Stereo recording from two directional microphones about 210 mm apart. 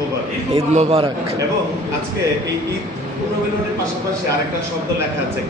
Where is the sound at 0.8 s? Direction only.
30° right (ahead or behind).